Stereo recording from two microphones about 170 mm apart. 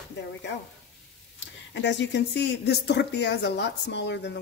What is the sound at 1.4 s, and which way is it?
Speech, 90° left.